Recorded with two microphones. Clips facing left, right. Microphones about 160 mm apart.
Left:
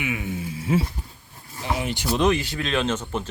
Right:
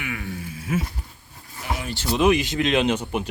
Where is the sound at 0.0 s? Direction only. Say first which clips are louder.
Left 3 dB; 20° left (ahead or behind).